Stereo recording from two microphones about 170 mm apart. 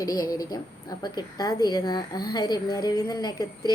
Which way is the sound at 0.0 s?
20° left (ahead or behind).